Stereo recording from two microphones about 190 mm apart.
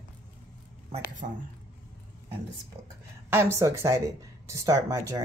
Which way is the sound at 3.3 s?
15° right (ahead or behind).